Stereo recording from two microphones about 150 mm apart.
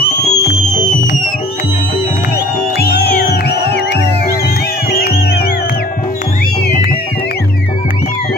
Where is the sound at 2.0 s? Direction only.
90° left.